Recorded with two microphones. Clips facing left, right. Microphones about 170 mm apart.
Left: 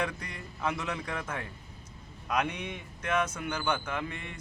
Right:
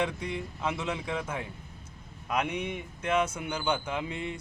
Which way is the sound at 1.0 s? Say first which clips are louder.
Right 3 dB; 10° right (ahead or behind).